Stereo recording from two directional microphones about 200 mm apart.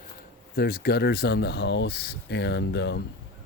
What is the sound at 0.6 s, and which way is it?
Speech, 50° left (ahead or behind).